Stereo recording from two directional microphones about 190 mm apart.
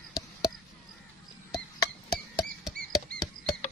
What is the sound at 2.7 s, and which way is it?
Rodents, 50° right (ahead or behind).